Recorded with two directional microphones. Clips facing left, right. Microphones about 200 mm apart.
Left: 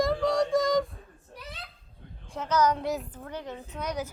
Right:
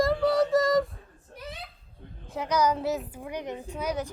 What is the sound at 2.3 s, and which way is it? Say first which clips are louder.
Speech: even; 10° right (ahead or behind).